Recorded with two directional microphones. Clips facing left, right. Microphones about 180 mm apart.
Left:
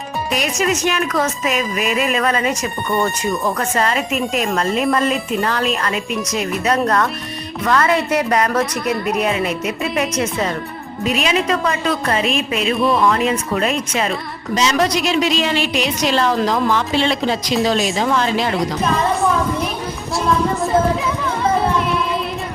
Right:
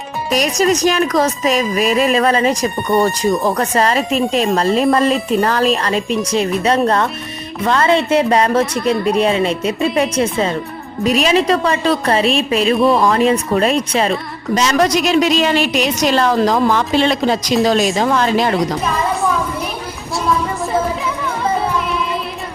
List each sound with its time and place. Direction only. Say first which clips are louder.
0.3 s a woman's voice: right 5 dB; 40° right (ahead or behind)
11.0 s speech: right 5 dB; 40° right (ahead or behind)
14.5 s a woman's voice: right 3 dB; 50° right (ahead or behind)